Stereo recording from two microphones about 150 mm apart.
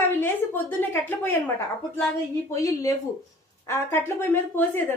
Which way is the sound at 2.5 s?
20° left (ahead or behind).